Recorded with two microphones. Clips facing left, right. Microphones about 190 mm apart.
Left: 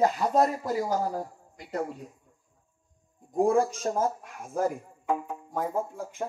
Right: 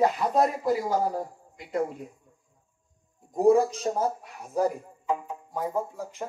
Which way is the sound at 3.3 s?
50° left (ahead or behind).